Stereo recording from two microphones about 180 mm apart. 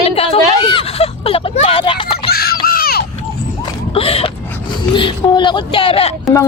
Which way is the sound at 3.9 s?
35° left (ahead or behind).